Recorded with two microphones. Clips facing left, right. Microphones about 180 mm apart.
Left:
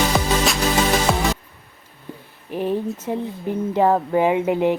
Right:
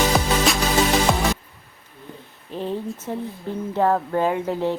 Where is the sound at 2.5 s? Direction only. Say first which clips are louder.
Left 4 dB; 15° left (ahead or behind).